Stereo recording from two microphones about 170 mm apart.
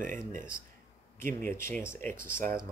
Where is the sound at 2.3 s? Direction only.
55° right (ahead or behind).